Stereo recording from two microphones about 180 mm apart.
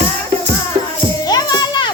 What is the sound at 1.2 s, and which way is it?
Music, 20° left (ahead or behind).